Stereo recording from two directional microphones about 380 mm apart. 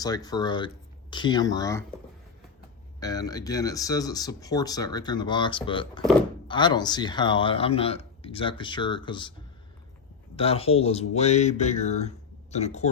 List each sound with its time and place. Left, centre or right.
0.0 s speech: centre
3.0 s speech: centre
10.3 s speech: centre